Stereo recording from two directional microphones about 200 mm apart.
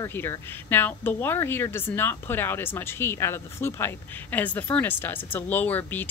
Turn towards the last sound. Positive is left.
turn(degrees=10)  # may be behind; listen again after turning